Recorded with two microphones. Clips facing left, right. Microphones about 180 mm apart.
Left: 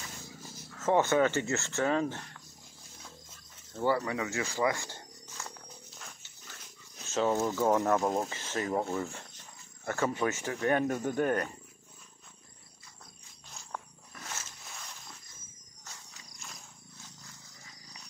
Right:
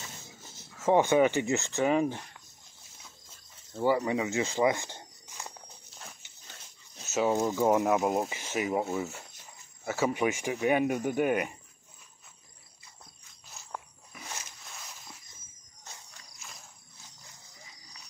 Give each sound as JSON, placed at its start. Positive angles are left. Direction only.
{"t": 0.7, "sound": "speech", "side_deg": -10}
{"t": 3.7, "sound": "speech", "side_deg": -15}
{"t": 6.2, "sound": "dog", "side_deg": -20}
{"t": 7.1, "sound": "speech", "side_deg": -10}
{"t": 13.5, "sound": "wild animals", "side_deg": -5}
{"t": 16.1, "sound": "a sound", "side_deg": 0}